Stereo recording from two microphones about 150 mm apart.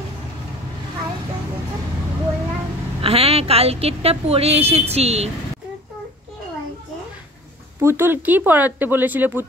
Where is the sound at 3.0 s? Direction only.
40° right (ahead or behind).